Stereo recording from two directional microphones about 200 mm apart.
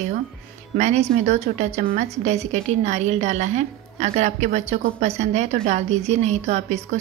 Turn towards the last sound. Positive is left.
turn(degrees=-35)  # may be behind; listen again after turning